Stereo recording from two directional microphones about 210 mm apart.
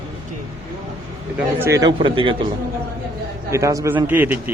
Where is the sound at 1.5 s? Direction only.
15° right (ahead or behind).